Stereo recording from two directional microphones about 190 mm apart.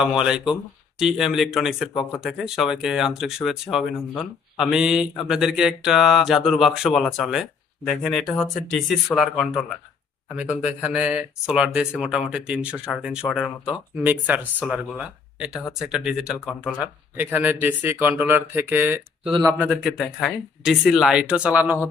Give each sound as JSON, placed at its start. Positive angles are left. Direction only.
{"t": 0.0, "sound": "speech", "side_deg": -5}
{"t": 19.2, "sound": "speech", "side_deg": -20}
{"t": 19.6, "sound": "speech", "side_deg": 0}